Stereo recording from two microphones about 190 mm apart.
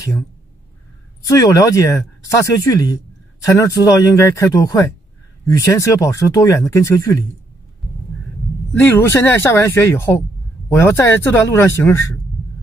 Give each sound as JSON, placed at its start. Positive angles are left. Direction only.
{"t": 1.2, "sound": "speech", "side_deg": 20}
{"t": 8.7, "sound": "speech", "side_deg": 10}